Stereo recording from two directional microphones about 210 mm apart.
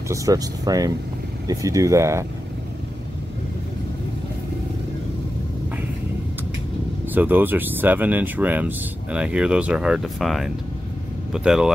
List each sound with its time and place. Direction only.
0.1 s speech: 15° right (ahead or behind)
7.2 s speech: 10° right (ahead or behind)